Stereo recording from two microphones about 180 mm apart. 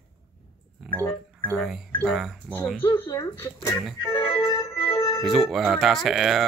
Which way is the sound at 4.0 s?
30° left (ahead or behind).